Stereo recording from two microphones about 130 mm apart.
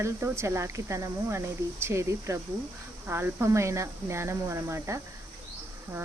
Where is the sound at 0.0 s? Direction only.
20° right (ahead or behind).